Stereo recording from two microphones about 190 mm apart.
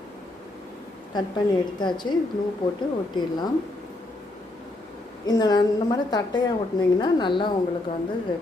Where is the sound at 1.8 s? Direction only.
25° left (ahead or behind).